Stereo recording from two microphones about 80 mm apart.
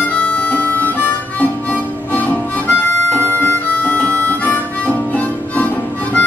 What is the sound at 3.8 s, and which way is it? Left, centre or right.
Harmonica, centre.